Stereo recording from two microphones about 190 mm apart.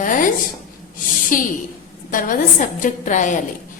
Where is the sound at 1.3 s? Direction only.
45° left (ahead or behind).